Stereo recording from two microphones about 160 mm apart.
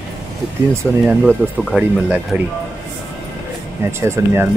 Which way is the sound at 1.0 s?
Centre (ahead or behind).